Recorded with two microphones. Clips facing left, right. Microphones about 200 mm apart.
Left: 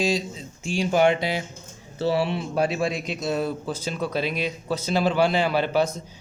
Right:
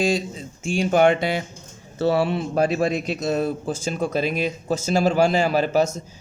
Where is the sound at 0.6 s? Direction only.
50° right (ahead or behind).